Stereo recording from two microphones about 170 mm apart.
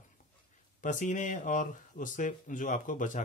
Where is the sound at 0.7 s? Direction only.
50° left (ahead or behind).